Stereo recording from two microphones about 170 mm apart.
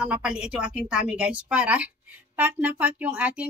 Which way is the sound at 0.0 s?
5° right (ahead or behind).